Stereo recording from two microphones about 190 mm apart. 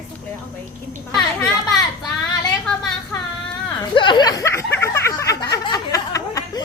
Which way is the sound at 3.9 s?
25° left (ahead or behind).